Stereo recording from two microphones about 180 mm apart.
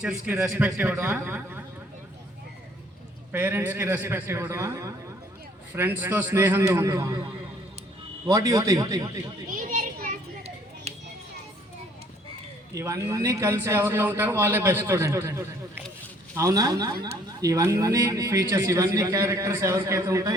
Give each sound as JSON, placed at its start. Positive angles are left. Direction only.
{"t": 0.0, "sound": "a man's voice", "side_deg": -5}
{"t": 3.3, "sound": "speech", "side_deg": -10}
{"t": 8.3, "sound": "a man's voice", "side_deg": -20}
{"t": 9.5, "sound": "children playing", "side_deg": -50}
{"t": 10.9, "sound": "music", "side_deg": -35}
{"t": 12.7, "sound": "a man's voice", "side_deg": -15}